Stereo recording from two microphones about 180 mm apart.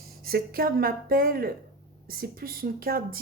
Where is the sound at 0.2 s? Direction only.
55° right (ahead or behind).